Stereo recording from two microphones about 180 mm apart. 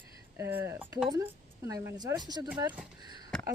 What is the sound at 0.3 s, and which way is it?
Speech, 15° right (ahead or behind).